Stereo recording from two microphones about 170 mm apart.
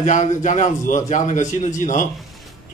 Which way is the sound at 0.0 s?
45° left (ahead or behind).